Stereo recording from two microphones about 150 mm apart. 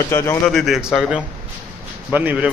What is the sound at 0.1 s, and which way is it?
Speech, 20° left (ahead or behind).